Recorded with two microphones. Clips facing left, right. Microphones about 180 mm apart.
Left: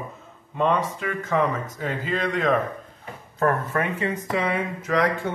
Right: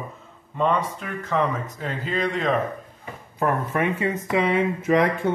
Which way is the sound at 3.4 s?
15° right (ahead or behind).